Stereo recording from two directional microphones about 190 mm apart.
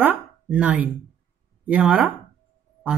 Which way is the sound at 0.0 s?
10° right (ahead or behind).